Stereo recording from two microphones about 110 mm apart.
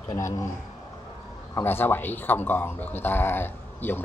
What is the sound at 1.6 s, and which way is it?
Speech, 20° left (ahead or behind).